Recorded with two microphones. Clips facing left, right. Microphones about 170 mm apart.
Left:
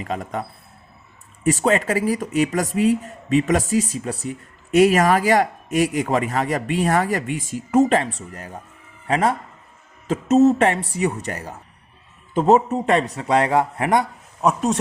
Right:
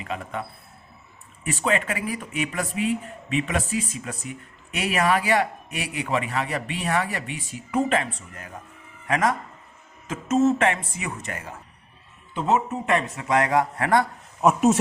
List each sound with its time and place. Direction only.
0.0 s speech: 40° left (ahead or behind)
1.5 s speech: 40° left (ahead or behind); by 14.0 s 20° left (ahead or behind)
14.4 s speech: 5° right (ahead or behind)